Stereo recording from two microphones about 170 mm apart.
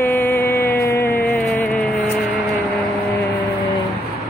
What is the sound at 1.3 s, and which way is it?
Music, 10° left (ahead or behind).